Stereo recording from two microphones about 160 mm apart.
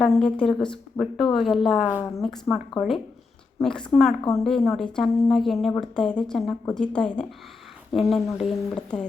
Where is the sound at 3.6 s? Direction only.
5° left (ahead or behind).